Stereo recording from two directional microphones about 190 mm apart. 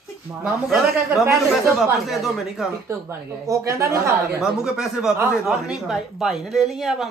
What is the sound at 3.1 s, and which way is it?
A woman's voice, 15° right (ahead or behind).